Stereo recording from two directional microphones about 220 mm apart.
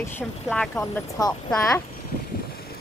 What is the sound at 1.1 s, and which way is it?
Speech, 15° left (ahead or behind).